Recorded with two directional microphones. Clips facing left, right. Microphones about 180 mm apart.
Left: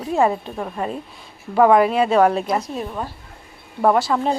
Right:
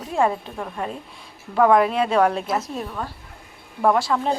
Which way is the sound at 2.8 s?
20° left (ahead or behind).